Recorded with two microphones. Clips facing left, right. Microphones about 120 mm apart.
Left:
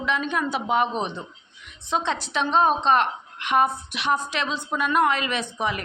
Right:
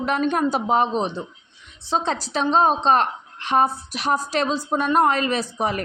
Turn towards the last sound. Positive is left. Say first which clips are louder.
# right 3 dB
turn(degrees=-40)  # may be behind; listen again after turning